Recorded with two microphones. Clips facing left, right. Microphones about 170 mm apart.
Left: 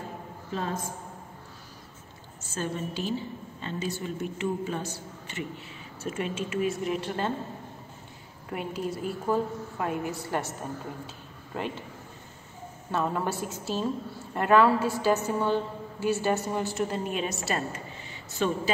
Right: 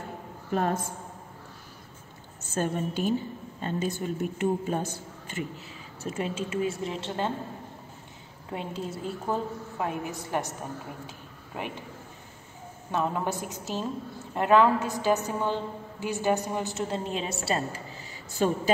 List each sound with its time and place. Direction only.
0.5 s a woman's voice: 60° right (ahead or behind)
2.5 s a woman's voice: 50° right (ahead or behind)
6.0 s a woman's voice: 35° right (ahead or behind)
8.5 s a woman's voice: 25° right (ahead or behind)
11.5 s a woman's voice: 15° right (ahead or behind)
12.9 s a woman's voice: 15° right (ahead or behind)
18.4 s a woman's voice: 45° right (ahead or behind)